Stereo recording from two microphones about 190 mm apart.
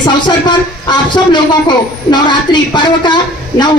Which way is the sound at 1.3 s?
25° left (ahead or behind).